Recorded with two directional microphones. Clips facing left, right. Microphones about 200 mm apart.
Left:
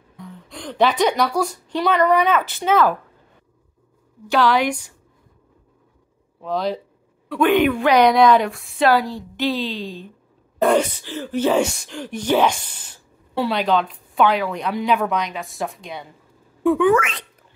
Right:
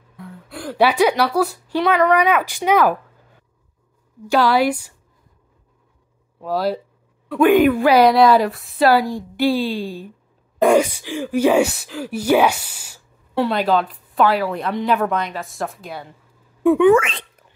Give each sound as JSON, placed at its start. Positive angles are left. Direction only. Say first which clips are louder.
{"t": 0.2, "sound": "a woman's voice", "louder": "right 3 dB", "side_deg": -5}
{"t": 4.3, "sound": "a woman's voice", "louder": "right 2 dB", "side_deg": -10}
{"t": 6.4, "sound": "a woman's voice", "louder": "right 2 dB", "side_deg": -5}
{"t": 16.7, "sound": "a woman's voice", "louder": "right 4 dB", "side_deg": -25}